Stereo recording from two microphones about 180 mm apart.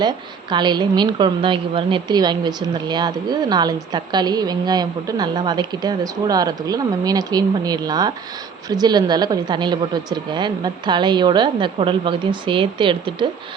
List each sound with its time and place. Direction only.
0.5 s a woman's voice: 25° right (ahead or behind)